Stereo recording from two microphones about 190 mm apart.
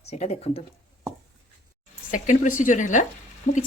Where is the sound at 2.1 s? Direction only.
45° left (ahead or behind).